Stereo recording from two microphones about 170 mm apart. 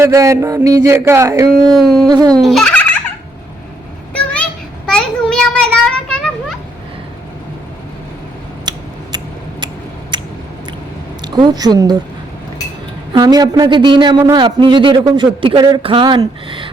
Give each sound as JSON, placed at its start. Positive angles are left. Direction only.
{"t": 0.0, "sound": "speech", "side_deg": -15}
{"t": 1.6, "sound": "a sound", "side_deg": 0}
{"t": 2.0, "sound": "a man's voice", "side_deg": -25}
{"t": 2.4, "sound": "turkey", "side_deg": 0}
{"t": 4.9, "sound": "a sound", "side_deg": 5}
{"t": 8.7, "sound": "scissors", "side_deg": -25}
{"t": 10.1, "sound": "chewing", "side_deg": -25}
{"t": 11.2, "sound": "a woman's voice", "side_deg": -25}
{"t": 13.1, "sound": "a man's voice", "side_deg": -25}